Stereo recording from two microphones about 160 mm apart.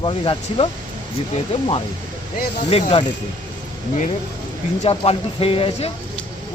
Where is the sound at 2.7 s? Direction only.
40° left (ahead or behind).